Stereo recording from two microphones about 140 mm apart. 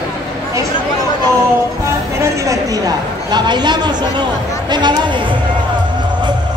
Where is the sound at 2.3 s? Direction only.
25° right (ahead or behind).